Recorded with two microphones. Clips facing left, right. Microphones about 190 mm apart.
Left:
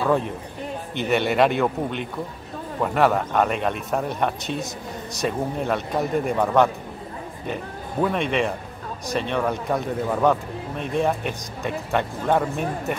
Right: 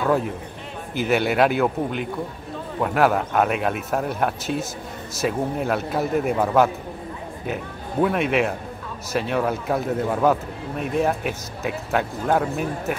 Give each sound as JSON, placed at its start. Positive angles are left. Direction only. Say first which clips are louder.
{"t": 0.0, "sound": "speech", "louder": "even", "side_deg": 0}